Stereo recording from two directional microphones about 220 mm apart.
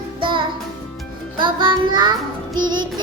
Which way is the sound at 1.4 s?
20° right (ahead or behind).